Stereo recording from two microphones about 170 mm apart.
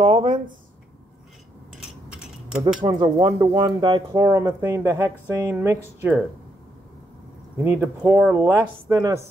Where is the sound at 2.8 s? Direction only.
25° right (ahead or behind); by 6.2 s 10° right (ahead or behind).